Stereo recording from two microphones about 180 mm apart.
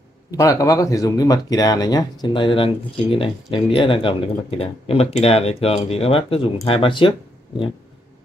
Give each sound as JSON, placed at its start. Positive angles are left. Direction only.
{"t": 0.3, "sound": "speech", "side_deg": 20}